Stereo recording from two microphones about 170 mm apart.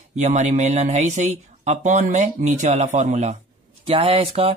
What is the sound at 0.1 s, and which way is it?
Speech, 45° right (ahead or behind).